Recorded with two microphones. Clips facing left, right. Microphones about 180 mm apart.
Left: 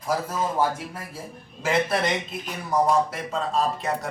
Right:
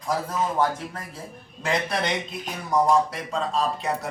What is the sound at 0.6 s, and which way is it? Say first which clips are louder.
A man's voice: even; 10° left (ahead or behind).